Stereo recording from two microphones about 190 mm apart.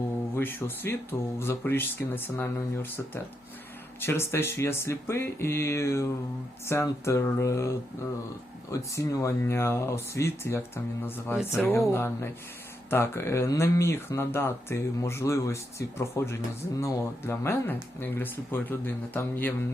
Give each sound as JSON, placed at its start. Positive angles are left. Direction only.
{"t": 0.3, "sound": "speech", "side_deg": 10}
{"t": 4.0, "sound": "speech", "side_deg": 10}